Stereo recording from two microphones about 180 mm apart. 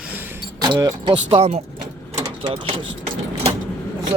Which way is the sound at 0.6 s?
20° right (ahead or behind).